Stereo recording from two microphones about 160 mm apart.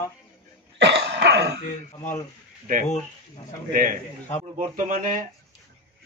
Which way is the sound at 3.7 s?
60° right (ahead or behind).